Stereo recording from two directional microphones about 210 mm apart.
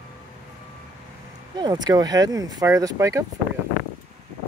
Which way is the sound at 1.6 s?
20° right (ahead or behind).